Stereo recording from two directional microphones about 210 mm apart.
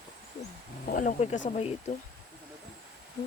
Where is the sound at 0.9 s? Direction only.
40° left (ahead or behind).